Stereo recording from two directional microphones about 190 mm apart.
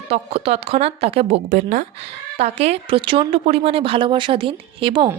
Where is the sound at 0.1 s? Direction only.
30° right (ahead or behind).